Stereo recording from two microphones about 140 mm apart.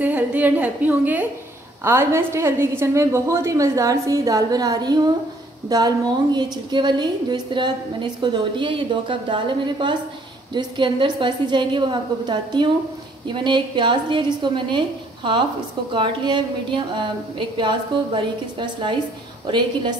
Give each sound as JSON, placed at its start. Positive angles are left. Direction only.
{"t": 0.0, "sound": "a woman's voice", "side_deg": -10}